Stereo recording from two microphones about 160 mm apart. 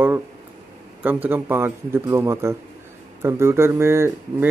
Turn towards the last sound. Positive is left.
turn(degrees=-15)  # may be behind; listen again after turning